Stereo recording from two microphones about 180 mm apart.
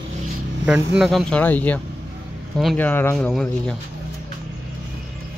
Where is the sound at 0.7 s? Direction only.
15° right (ahead or behind).